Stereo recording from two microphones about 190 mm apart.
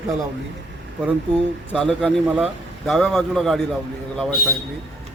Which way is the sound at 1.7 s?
5° left (ahead or behind).